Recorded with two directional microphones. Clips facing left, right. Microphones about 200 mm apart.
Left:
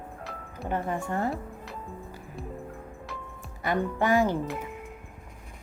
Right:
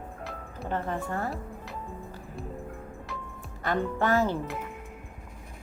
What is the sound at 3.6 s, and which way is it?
Speech, 15° left (ahead or behind).